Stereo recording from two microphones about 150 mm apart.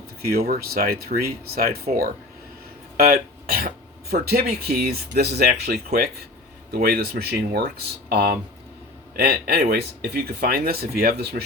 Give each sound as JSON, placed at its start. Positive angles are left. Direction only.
{"t": 0.2, "sound": "speech", "side_deg": -90}
{"t": 3.0, "sound": "speech", "side_deg": -85}